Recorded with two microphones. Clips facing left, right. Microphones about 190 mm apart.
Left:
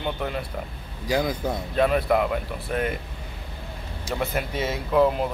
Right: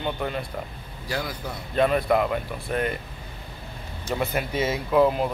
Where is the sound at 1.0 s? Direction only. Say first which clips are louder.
Left 6 dB; 15° left (ahead or behind).